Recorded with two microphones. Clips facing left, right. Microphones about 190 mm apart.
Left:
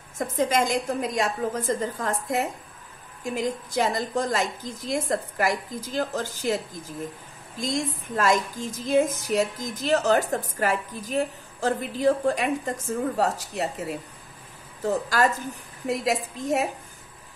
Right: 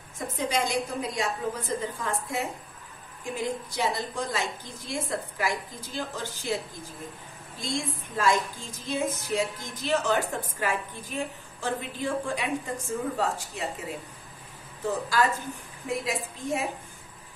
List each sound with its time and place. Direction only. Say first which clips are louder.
0.2 s a woman's voice: left 5 dB; 45° left (ahead or behind)
3.4 s a woman's voice: left 3 dB; 45° left (ahead or behind)
7.6 s a woman's voice: left 4 dB; 45° left (ahead or behind)
14.9 s a woman's voice: left 3 dB; 45° left (ahead or behind)